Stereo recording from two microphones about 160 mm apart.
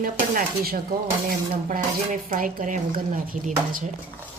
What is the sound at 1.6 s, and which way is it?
Speech, 60° right (ahead or behind).